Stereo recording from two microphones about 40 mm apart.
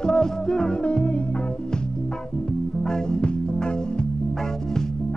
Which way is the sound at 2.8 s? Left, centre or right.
Centre.